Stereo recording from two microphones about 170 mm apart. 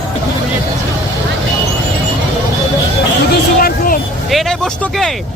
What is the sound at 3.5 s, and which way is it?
Vehicle, 55° left (ahead or behind).